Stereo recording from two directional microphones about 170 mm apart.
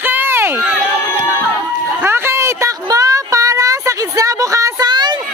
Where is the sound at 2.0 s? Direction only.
15° right (ahead or behind).